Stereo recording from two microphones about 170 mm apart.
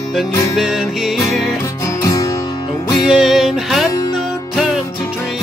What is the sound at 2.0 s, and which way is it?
Music, 20° left (ahead or behind).